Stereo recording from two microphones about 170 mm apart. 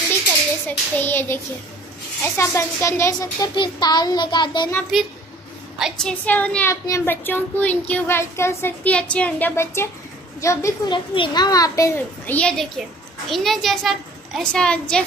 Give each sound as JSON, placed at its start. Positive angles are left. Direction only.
{"t": 0.7, "sound": "a child's voice", "side_deg": 10}
{"t": 5.8, "sound": "a child's voice", "side_deg": 0}
{"t": 12.4, "sound": "a child's voice", "side_deg": 5}